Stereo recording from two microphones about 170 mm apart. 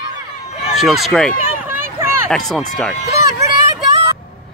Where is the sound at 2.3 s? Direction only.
Centre (ahead or behind).